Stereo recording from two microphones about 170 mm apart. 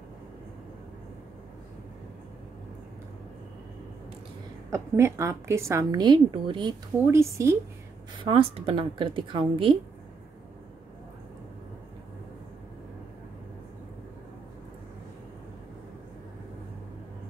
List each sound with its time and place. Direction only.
4.6 s a woman's voice: 15° right (ahead or behind)
7.1 s a woman's voice: 15° right (ahead or behind)
8.2 s a woman's voice: 35° right (ahead or behind)